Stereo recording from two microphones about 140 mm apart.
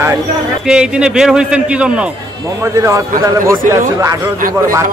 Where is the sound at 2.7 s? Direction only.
20° right (ahead or behind).